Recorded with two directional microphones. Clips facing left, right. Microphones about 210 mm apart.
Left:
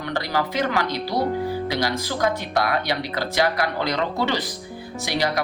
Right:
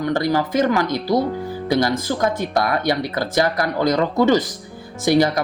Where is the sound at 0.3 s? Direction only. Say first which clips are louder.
Right 5 dB; 45° right (ahead or behind).